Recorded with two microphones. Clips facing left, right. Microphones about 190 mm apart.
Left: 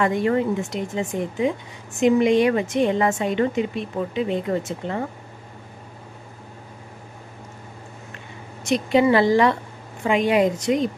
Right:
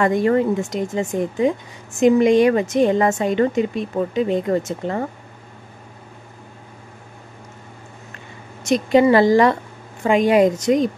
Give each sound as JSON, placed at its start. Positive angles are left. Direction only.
{"t": 0.0, "sound": "a woman's voice", "side_deg": -45}
{"t": 8.6, "sound": "a woman's voice", "side_deg": -45}